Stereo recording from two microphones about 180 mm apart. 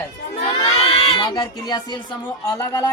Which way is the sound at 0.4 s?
35° left (ahead or behind).